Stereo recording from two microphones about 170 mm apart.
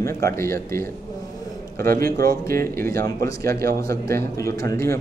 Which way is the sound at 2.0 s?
60° right (ahead or behind).